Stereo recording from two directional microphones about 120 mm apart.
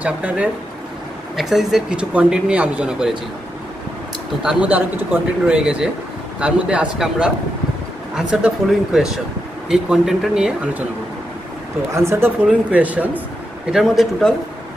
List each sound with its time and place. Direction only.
0.0 s speech: 10° right (ahead or behind)
4.4 s speech: 10° right (ahead or behind)
11.9 s speech: 20° right (ahead or behind)
12.4 s speech: 10° right (ahead or behind)